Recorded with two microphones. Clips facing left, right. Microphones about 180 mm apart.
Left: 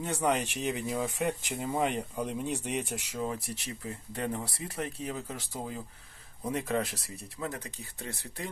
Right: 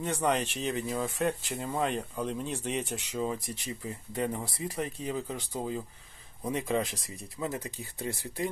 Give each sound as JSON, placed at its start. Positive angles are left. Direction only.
{"t": 0.0, "sound": "speech", "side_deg": 10}
{"t": 3.5, "sound": "speech", "side_deg": 0}
{"t": 7.4, "sound": "speech", "side_deg": -15}